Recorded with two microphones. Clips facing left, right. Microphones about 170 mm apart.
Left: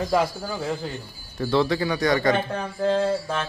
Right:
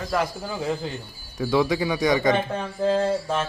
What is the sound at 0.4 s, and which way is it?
A man's voice, 5° right (ahead or behind).